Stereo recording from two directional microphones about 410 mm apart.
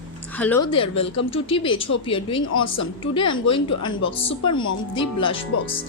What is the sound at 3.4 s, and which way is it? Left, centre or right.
Speech, centre.